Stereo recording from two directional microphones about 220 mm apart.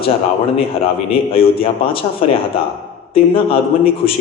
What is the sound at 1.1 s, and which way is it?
Speech, 25° left (ahead or behind).